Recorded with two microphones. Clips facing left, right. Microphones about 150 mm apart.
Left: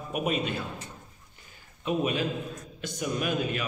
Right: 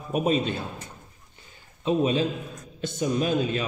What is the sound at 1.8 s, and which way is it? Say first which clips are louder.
A man's voice: right 5 dB; 25° right (ahead or behind).